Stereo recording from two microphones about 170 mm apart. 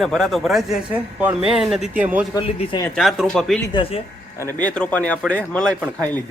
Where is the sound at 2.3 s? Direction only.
25° left (ahead or behind).